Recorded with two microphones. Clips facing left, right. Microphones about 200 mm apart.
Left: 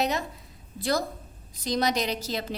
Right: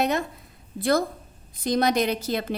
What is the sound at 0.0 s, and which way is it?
A woman's voice, 55° right (ahead or behind).